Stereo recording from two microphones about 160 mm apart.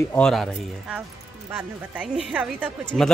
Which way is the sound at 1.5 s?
15° right (ahead or behind).